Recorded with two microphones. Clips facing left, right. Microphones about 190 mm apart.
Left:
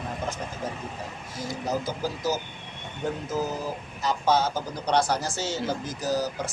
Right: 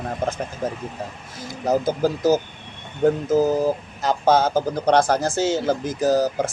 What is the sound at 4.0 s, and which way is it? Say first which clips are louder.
Speech: right 4 dB; 50° right (ahead or behind).